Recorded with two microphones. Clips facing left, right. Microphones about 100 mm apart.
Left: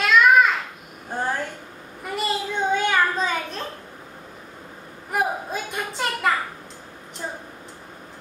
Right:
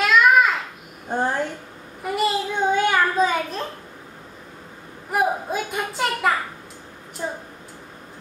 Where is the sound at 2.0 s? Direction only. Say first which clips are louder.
Right 4 dB; 5° right (ahead or behind).